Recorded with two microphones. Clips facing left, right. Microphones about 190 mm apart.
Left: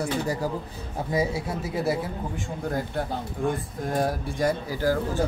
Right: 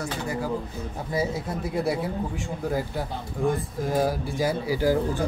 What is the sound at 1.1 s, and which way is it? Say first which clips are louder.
Speech: left 1 dB; 5° left (ahead or behind).